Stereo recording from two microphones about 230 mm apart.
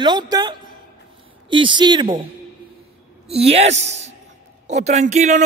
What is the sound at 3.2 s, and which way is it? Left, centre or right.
Speech, right.